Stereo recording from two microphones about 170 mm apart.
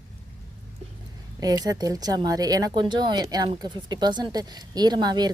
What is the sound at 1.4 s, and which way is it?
Speech, 20° right (ahead or behind).